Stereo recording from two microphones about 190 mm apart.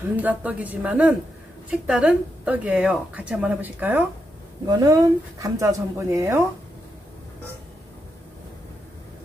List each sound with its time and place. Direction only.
0.1 s speech: 10° right (ahead or behind)
4.6 s speech: 20° right (ahead or behind)